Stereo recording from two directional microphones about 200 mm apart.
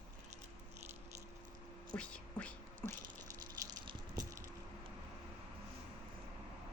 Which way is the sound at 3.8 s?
20° right (ahead or behind).